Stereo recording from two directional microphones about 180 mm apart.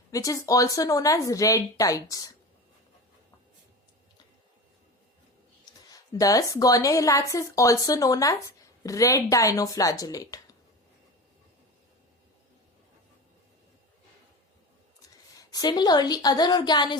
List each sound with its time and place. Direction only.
0.1 s speech: 20° left (ahead or behind)
5.9 s speech: 20° left (ahead or behind)
15.4 s speech: 20° left (ahead or behind)